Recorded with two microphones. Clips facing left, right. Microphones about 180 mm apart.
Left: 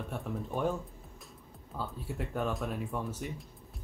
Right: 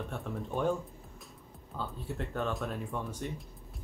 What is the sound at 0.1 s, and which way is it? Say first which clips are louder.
Speech: even; 5° left (ahead or behind).